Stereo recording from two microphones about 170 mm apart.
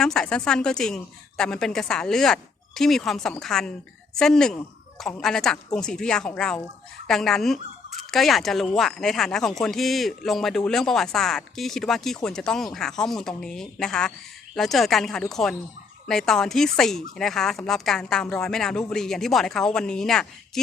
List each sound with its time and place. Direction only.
0.0 s speech: 5° left (ahead or behind)